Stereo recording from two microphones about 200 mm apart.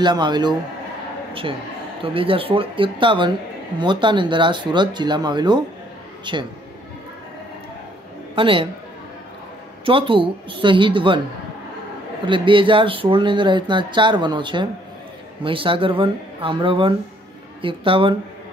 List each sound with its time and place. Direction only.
0.0 s speech: 20° right (ahead or behind)
2.1 s speech: 25° right (ahead or behind)
8.4 s speech: 25° right (ahead or behind)
9.8 s speech: 25° right (ahead or behind)
12.3 s speech: 25° right (ahead or behind)